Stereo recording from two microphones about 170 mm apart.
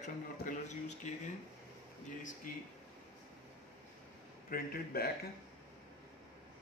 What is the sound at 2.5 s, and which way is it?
Speech, 55° left (ahead or behind).